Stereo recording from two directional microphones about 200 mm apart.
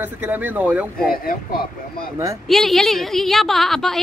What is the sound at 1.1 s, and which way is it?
Speech, 45° left (ahead or behind).